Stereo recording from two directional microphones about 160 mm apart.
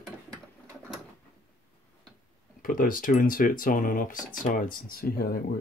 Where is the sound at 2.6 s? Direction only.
60° left (ahead or behind).